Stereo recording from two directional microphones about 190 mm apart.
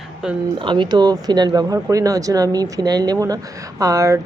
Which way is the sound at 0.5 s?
25° right (ahead or behind).